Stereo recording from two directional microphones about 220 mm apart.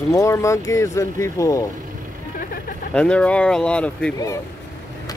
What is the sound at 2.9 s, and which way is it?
Speech, 5° left (ahead or behind).